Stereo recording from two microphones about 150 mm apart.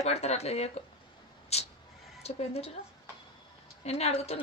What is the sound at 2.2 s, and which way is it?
Speech, 45° left (ahead or behind).